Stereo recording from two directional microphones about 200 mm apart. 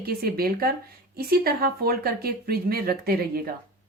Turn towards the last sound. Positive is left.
turn(degrees=-50)  # may be behind; listen again after turning